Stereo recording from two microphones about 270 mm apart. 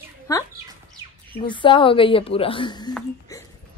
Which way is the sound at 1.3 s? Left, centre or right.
Centre.